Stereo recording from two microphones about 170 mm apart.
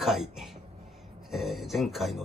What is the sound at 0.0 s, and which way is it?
Speech, centre (ahead or behind).